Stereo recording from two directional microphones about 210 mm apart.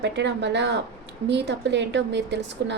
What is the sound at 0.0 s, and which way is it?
A woman's voice, 55° right (ahead or behind).